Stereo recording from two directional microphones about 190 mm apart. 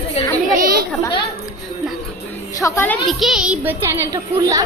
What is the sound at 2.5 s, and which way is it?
Speech, 15° left (ahead or behind).